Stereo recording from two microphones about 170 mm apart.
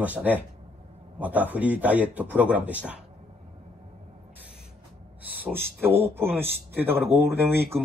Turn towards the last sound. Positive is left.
turn(degrees=-15)  # may be behind; listen again after turning